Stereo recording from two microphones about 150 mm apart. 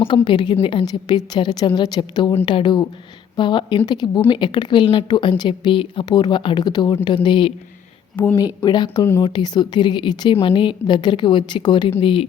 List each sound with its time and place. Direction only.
0.0 s a woman's voice: 35° left (ahead or behind)
8.1 s speech: 15° left (ahead or behind)
8.6 s a woman's voice: 30° left (ahead or behind)